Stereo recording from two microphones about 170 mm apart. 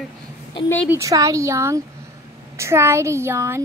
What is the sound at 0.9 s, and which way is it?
Speech, 20° right (ahead or behind).